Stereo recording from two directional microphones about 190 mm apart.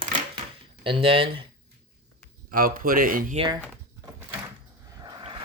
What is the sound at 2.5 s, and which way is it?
Speech, 50° right (ahead or behind).